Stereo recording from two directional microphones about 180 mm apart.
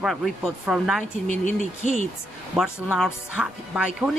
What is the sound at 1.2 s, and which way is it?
Speech, 45° left (ahead or behind).